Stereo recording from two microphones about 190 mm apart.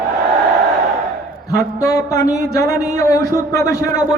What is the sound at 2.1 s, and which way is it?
A man's voice, 15° left (ahead or behind).